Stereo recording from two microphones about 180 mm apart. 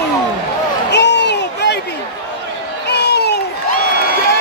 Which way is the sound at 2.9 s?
65° left (ahead or behind).